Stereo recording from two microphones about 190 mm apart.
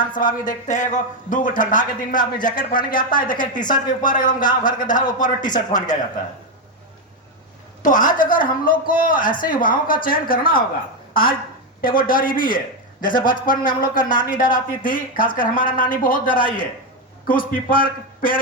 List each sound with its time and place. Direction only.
0.1 s a man's voice: 45° left (ahead or behind)
7.8 s a man's voice: 45° left (ahead or behind)